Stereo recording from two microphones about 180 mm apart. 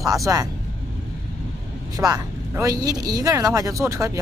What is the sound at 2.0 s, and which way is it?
Speech, 20° right (ahead or behind).